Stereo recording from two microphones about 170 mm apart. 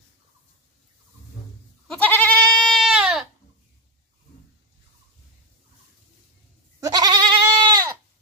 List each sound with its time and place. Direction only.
1.9 s goat: 10° left (ahead or behind)
6.8 s goat: 25° right (ahead or behind)